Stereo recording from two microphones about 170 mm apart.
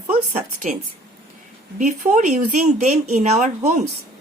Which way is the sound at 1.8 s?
45° right (ahead or behind).